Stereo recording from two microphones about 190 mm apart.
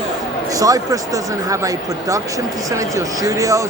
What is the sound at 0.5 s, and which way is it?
Speech, 20° right (ahead or behind).